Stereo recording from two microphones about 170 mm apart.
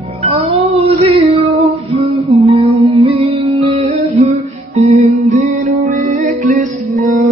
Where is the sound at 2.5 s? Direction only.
35° right (ahead or behind).